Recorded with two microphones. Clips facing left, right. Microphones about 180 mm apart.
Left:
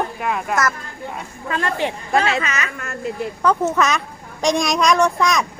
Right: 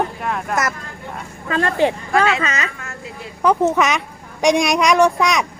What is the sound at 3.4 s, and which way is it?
Speech, 20° right (ahead or behind).